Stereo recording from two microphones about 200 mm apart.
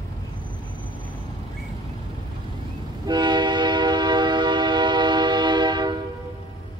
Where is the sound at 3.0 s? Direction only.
20° right (ahead or behind).